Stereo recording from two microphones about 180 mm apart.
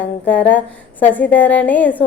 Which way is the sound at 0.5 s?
10° left (ahead or behind).